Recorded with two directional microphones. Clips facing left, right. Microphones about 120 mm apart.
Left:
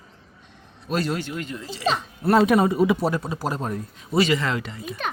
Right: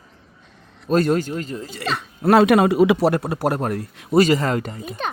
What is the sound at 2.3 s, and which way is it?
A man's voice, 85° right.